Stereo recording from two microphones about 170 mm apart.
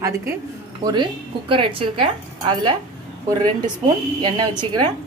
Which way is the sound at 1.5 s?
30° right (ahead or behind).